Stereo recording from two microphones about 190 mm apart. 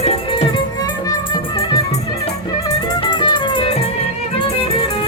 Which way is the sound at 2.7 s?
25° left (ahead or behind).